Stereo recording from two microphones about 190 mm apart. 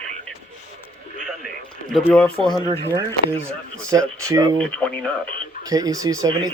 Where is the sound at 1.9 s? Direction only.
5° left (ahead or behind).